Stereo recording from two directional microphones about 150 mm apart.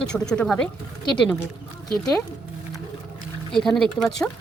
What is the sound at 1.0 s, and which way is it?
Speech, 30° left (ahead or behind).